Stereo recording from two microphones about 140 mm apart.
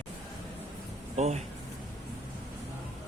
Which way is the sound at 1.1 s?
50° right (ahead or behind).